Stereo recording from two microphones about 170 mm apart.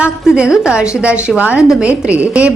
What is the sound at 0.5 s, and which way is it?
A woman's voice, 5° right (ahead or behind).